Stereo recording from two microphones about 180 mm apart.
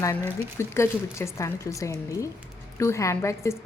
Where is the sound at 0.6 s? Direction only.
15° left (ahead or behind).